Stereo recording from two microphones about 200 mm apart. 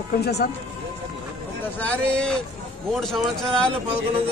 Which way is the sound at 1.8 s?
5° left (ahead or behind).